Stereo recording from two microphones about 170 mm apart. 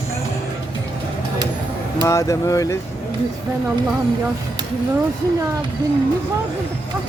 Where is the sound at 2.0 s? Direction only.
20° left (ahead or behind).